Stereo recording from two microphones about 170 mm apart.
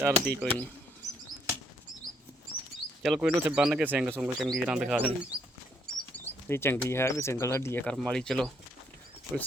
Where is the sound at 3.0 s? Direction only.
Centre (ahead or behind).